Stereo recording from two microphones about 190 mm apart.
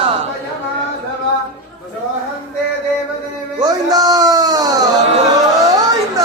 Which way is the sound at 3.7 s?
20° right (ahead or behind).